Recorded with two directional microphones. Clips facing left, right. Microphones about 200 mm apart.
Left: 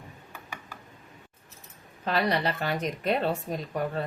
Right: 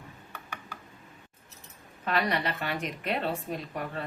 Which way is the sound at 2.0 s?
35° left (ahead or behind).